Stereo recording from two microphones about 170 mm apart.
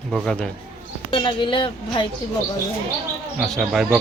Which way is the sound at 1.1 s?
30° left (ahead or behind).